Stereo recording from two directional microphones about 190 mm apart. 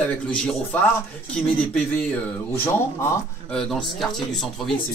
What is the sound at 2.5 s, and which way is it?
Speech, 15° left (ahead or behind).